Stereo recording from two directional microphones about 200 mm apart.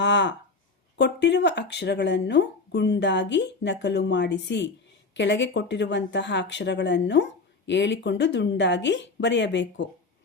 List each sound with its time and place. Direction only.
0.0 s speech: 65° left (ahead or behind)